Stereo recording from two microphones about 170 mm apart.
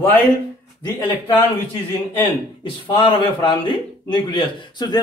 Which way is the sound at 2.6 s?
30° left (ahead or behind).